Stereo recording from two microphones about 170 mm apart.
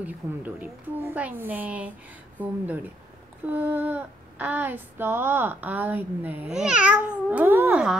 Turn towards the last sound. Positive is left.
turn(degrees=-10)  # may be behind; listen again after turning